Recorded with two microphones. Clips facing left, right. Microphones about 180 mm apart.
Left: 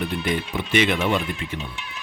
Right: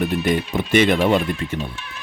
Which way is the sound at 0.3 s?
45° right (ahead or behind).